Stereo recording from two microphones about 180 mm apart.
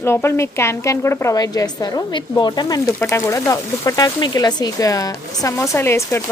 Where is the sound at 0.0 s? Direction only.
15° left (ahead or behind).